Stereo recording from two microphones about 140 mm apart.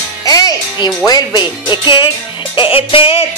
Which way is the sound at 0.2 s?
25° left (ahead or behind).